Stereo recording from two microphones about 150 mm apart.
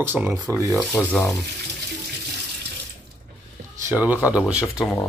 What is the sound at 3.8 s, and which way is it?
Speech, 10° right (ahead or behind).